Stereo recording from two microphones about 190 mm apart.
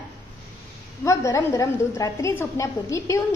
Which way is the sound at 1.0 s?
15° left (ahead or behind).